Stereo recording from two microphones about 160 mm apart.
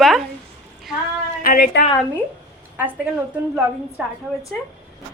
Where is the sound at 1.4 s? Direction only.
70° left (ahead or behind).